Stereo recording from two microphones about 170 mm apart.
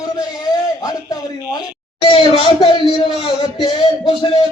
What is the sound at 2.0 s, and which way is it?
Speech, 30° left (ahead or behind).